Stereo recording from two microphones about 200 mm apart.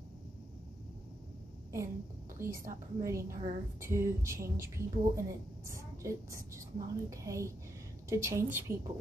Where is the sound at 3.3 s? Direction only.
40° right (ahead or behind).